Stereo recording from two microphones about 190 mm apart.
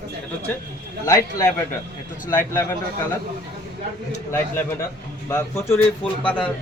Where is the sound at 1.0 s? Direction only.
20° left (ahead or behind).